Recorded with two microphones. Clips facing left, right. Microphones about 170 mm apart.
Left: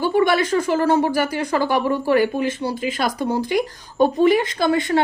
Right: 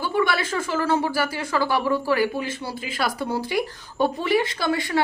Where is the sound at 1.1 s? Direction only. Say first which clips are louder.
Left 4 dB; 20° left (ahead or behind).